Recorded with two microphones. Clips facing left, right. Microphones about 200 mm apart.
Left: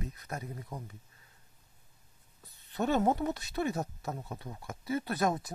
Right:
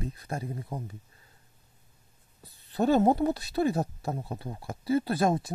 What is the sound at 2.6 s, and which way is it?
Speech, 35° right (ahead or behind).